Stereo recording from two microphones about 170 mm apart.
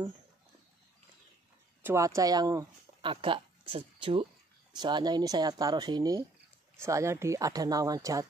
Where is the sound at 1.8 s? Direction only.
20° right (ahead or behind).